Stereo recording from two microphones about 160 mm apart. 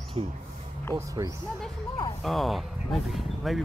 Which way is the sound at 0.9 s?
20° right (ahead or behind).